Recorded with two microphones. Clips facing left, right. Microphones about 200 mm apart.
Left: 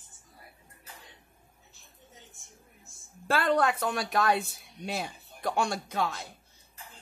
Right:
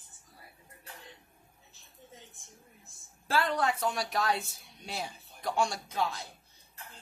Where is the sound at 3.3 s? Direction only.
60° left (ahead or behind).